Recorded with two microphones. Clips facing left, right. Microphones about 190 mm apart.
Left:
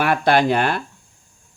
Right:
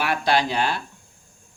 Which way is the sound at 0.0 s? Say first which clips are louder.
Left 5 dB; 55° left (ahead or behind).